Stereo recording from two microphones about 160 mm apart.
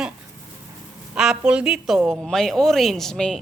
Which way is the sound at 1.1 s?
5° right (ahead or behind).